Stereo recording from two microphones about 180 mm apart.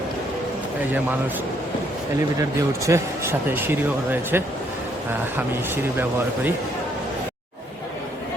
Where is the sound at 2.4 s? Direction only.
15° right (ahead or behind).